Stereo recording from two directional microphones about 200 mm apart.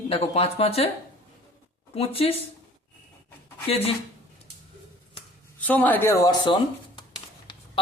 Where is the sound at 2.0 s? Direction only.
30° left (ahead or behind).